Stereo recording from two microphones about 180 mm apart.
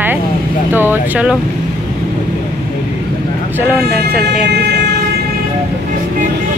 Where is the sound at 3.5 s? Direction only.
10° right (ahead or behind).